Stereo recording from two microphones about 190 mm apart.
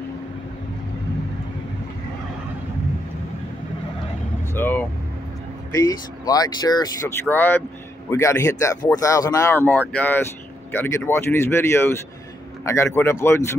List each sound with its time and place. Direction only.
4.6 s vehicle: 10° left (ahead or behind)
5.7 s speech: 20° left (ahead or behind)